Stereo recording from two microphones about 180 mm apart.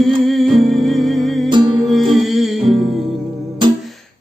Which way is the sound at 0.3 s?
Centre (ahead or behind).